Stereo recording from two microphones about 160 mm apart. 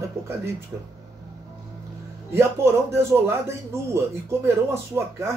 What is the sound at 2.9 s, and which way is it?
Speech, 15° right (ahead or behind).